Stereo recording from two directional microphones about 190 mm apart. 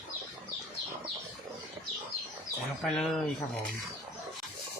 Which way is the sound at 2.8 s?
Centre (ahead or behind).